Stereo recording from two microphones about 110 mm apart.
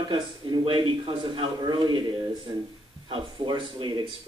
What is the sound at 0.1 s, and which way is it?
A man's voice, 50° right (ahead or behind).